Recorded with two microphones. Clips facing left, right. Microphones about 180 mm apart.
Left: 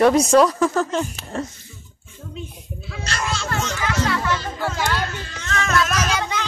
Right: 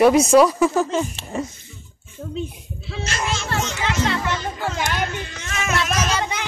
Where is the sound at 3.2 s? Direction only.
25° right (ahead or behind).